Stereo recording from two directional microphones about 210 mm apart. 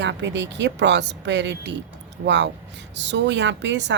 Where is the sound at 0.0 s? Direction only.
55° right (ahead or behind).